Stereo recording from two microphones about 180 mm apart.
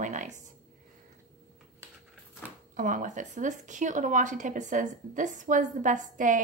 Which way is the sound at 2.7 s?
45° right (ahead or behind).